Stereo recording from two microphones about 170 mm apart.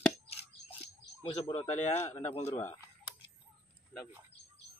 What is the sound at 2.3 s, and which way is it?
Speech, 40° left (ahead or behind).